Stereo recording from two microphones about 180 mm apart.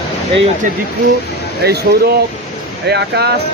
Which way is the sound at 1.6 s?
60° right (ahead or behind).